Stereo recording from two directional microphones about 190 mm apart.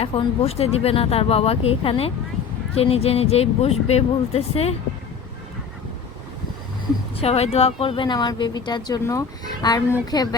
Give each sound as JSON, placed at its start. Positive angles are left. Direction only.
{"t": 0.0, "sound": "speech", "side_deg": 30}
{"t": 7.2, "sound": "speech", "side_deg": 35}